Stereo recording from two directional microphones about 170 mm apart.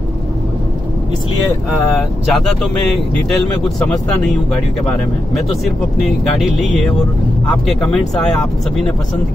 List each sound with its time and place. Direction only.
2.0 s speech: centre (ahead or behind)
7.6 s speech: 5° left (ahead or behind)